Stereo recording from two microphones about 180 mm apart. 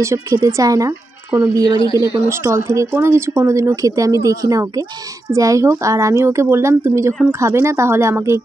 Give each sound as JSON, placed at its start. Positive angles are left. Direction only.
{"t": 0.0, "sound": "speech", "side_deg": -15}